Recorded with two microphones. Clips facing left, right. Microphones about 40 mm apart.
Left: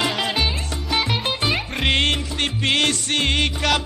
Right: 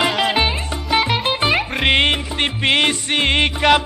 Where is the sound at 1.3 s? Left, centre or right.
Right.